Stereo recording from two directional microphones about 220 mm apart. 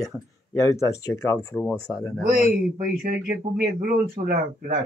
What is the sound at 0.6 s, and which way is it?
Speech, 15° left (ahead or behind).